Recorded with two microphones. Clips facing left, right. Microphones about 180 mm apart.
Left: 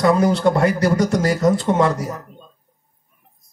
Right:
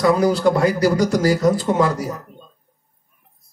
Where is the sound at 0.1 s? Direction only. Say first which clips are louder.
Even; 25° left (ahead or behind).